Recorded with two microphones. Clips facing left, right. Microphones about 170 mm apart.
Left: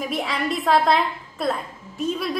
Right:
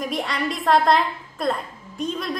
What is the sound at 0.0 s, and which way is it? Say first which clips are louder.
A woman's voice: even; centre (ahead or behind).